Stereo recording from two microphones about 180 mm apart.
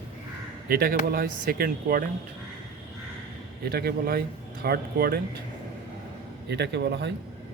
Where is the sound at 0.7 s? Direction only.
60° right (ahead or behind).